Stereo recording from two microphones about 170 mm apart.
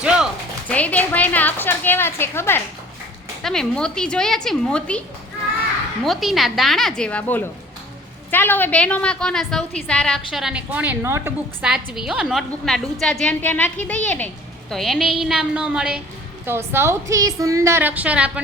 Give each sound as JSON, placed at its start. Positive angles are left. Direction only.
{"t": 0.0, "sound": "a sound", "side_deg": -5}
{"t": 0.7, "sound": "a woman's voice", "side_deg": 10}
{"t": 3.4, "sound": "a woman's voice", "side_deg": 5}
{"t": 11.6, "sound": "a woman's voice", "side_deg": -5}